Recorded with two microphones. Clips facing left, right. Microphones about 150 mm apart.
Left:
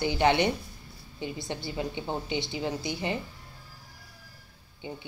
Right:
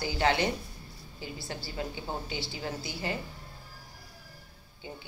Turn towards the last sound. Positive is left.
turn(degrees=20)  # may be behind; listen again after turning